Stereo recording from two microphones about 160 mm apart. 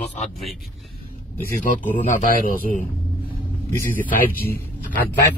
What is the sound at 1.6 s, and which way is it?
Speech, 50° left (ahead or behind).